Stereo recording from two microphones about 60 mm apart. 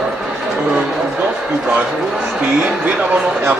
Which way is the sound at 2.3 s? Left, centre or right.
Centre.